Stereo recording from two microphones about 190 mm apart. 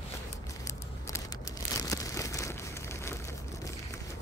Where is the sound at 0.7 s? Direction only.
15° left (ahead or behind).